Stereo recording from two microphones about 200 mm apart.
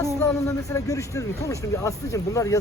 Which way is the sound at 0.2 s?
15° left (ahead or behind).